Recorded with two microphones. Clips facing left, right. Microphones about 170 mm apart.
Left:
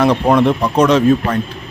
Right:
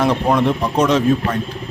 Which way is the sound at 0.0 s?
70° left (ahead or behind).